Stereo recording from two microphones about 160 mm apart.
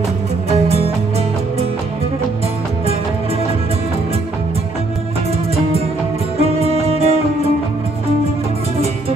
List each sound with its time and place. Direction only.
0.5 s music: 40° right (ahead or behind)
6.4 s music: 40° right (ahead or behind)